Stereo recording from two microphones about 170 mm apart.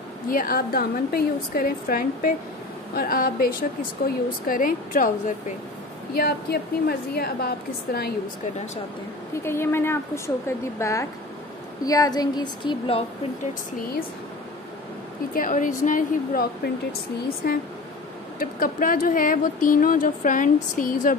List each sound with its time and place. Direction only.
0.3 s a woman's voice: 60° left (ahead or behind)
6.1 s a woman's voice: 65° left (ahead or behind)
9.4 s a woman's voice: 15° left (ahead or behind); by 13.0 s 30° left (ahead or behind)
15.3 s a woman's voice: 50° left (ahead or behind)